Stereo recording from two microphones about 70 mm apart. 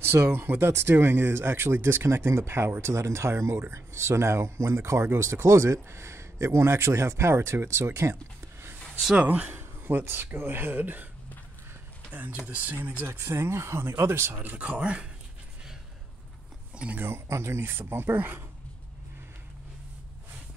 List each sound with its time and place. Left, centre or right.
0.0 s speech: right
9.0 s speech: centre
12.1 s speech: right
16.7 s speech: centre
17.0 s speech: right